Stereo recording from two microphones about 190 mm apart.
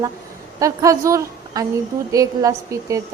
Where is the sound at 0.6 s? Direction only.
15° right (ahead or behind).